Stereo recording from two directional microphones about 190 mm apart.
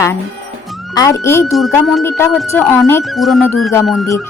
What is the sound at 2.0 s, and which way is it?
A woman's voice, 15° left (ahead or behind).